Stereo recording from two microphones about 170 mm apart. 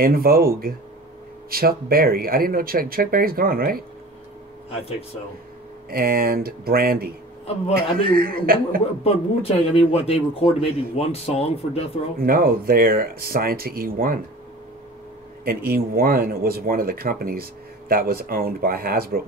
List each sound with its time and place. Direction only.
0.0 s speech: 60° right (ahead or behind)
5.9 s speech: 60° right (ahead or behind)
9.0 s a man's voice: 35° left (ahead or behind)
12.2 s speech: 60° right (ahead or behind)
15.4 s speech: 60° right (ahead or behind)